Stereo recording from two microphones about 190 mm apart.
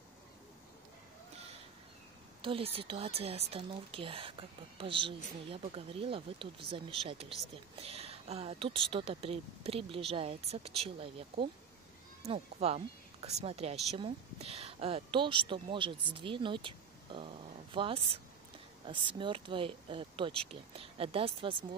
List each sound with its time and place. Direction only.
2.4 s a woman's voice: 30° right (ahead or behind)
12.3 s a woman's voice: 35° right (ahead or behind)